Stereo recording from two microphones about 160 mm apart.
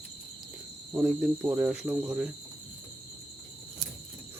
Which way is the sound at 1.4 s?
15° right (ahead or behind).